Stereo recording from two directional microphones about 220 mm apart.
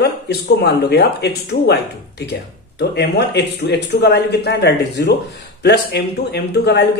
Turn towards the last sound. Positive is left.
turn(degrees=50)  # may be behind; listen again after turning